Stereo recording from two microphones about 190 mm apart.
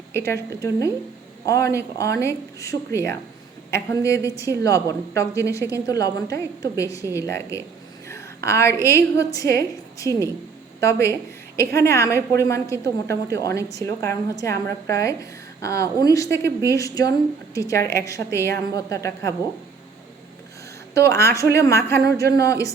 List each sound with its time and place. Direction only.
0.1 s a woman's voice: 15° left (ahead or behind)
21.2 s a woman's voice: 15° left (ahead or behind)